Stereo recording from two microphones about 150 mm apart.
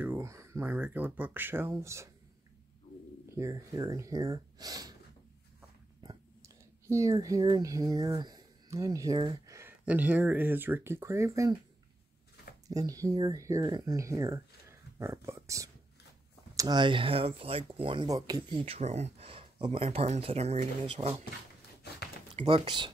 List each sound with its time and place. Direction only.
0.0 s speech: 15° right (ahead or behind)
3.3 s speech: 20° right (ahead or behind)
6.4 s speech: 20° right (ahead or behind)
12.6 s speech: 25° right (ahead or behind)
18.8 s speech: 45° right (ahead or behind)
22.4 s speech: 35° right (ahead or behind)